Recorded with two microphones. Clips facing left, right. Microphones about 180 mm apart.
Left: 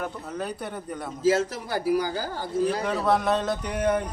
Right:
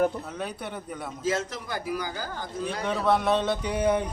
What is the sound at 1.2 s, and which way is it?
A man's voice, 30° left (ahead or behind).